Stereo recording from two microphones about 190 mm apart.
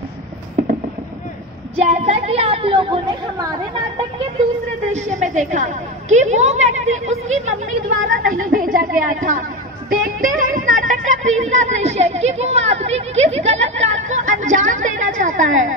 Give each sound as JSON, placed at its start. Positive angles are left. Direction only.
{"t": 1.8, "sound": "a woman's voice", "side_deg": -35}
{"t": 4.9, "sound": "a woman's voice", "side_deg": -40}
{"t": 9.8, "sound": "music", "side_deg": -45}
{"t": 11.6, "sound": "speech", "side_deg": -35}